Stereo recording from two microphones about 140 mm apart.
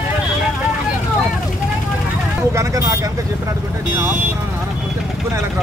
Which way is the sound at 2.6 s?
25° right (ahead or behind).